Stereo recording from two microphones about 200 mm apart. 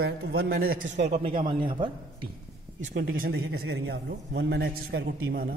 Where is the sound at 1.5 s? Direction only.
25° right (ahead or behind).